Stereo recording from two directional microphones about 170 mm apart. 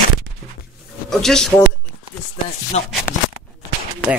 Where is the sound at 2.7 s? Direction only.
40° left (ahead or behind).